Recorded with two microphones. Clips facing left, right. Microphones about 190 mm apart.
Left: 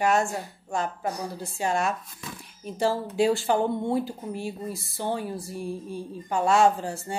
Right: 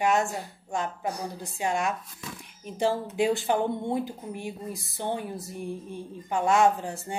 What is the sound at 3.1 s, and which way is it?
Speech, 20° right (ahead or behind).